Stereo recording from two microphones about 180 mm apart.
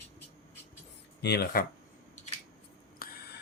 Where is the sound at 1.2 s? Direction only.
60° left (ahead or behind).